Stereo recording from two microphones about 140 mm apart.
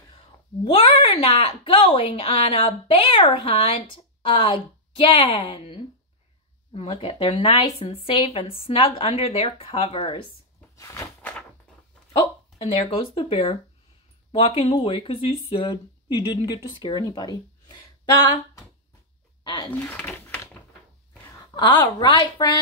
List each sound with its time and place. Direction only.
0.7 s a woman's voice: 40° left (ahead or behind)
10.8 s walk: 20° left (ahead or behind)
12.5 s a woman's voice: 45° left (ahead or behind); by 17.7 s 30° left (ahead or behind)
19.4 s a sound: 30° left (ahead or behind)
19.7 s speech: 15° left (ahead or behind)
21.5 s a woman's voice: 20° left (ahead or behind)
21.9 s a woman's voice: 35° left (ahead or behind)